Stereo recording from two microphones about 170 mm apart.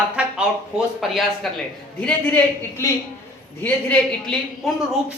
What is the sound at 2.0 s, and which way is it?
A man's voice, 10° left (ahead or behind).